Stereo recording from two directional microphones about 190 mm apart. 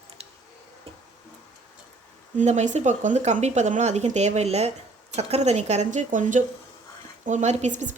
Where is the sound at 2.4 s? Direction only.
40° right (ahead or behind).